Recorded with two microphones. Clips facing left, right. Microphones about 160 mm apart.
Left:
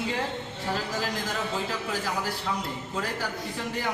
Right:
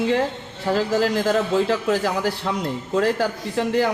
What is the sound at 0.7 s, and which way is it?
A man's voice, 80° right.